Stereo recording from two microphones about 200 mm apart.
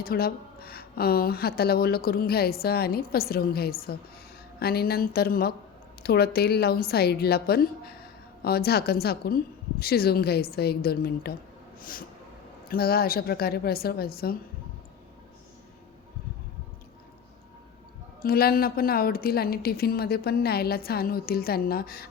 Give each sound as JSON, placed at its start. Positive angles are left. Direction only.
{"t": 0.0, "sound": "a woman's voice", "side_deg": 50}
{"t": 18.2, "sound": "a woman's voice", "side_deg": 50}